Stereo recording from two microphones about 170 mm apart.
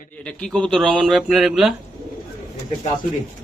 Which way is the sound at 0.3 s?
5° left (ahead or behind).